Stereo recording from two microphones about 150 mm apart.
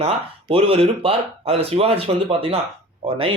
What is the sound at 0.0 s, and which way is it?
Speech, 40° right (ahead or behind).